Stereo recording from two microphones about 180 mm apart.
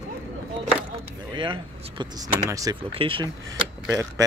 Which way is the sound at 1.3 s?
25° right (ahead or behind).